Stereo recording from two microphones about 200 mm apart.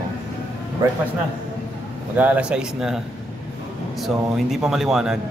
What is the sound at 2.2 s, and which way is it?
Speech, 5° right (ahead or behind).